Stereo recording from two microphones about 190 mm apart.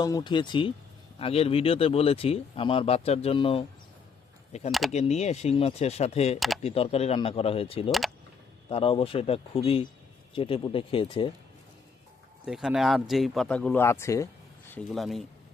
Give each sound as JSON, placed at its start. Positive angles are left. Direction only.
{"t": 0.0, "sound": "speech", "side_deg": 20}
{"t": 4.9, "sound": "speech", "side_deg": 35}
{"t": 7.9, "sound": "speech", "side_deg": 0}
{"t": 8.7, "sound": "speech", "side_deg": 30}
{"t": 12.5, "sound": "speech", "side_deg": 0}
{"t": 14.7, "sound": "speech", "side_deg": 5}